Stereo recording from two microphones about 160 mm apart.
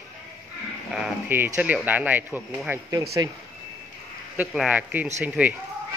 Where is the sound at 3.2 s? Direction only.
25° right (ahead or behind).